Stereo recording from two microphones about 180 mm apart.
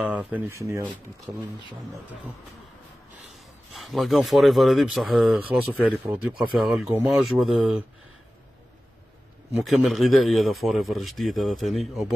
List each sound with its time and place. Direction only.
0.0 s speech: 5° right (ahead or behind)
3.3 s speech: centre (ahead or behind)
9.5 s speech: centre (ahead or behind)